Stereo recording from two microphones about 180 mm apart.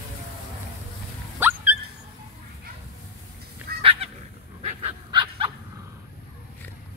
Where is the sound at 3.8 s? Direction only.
30° right (ahead or behind).